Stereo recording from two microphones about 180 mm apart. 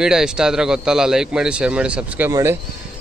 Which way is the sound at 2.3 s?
15° right (ahead or behind).